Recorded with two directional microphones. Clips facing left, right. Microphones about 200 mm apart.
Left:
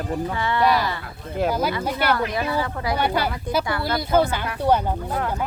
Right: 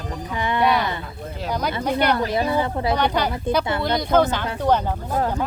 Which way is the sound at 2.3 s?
25° right (ahead or behind).